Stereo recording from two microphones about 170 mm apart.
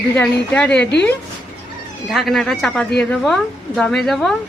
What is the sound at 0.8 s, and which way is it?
Speech, 90° left.